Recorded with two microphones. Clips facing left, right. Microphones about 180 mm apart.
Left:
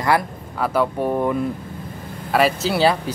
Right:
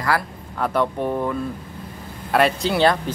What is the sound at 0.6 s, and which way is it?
Speech, 5° left (ahead or behind).